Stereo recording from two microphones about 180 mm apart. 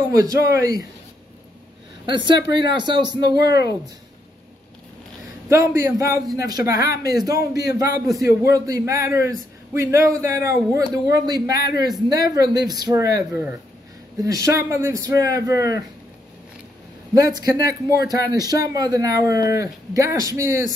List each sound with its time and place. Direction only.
0.1 s a man's voice: 20° right (ahead or behind)
2.0 s a man's voice: 25° right (ahead or behind)
5.5 s a man's voice: 15° right (ahead or behind)
17.1 s a man's voice: 20° right (ahead or behind)